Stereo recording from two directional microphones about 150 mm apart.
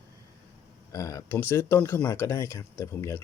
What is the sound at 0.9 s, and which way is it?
Speech, 20° left (ahead or behind).